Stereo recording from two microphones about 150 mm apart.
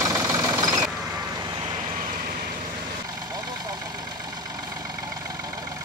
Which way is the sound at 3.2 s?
25° right (ahead or behind).